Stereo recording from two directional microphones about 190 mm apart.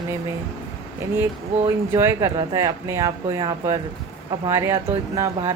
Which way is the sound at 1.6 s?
15° right (ahead or behind).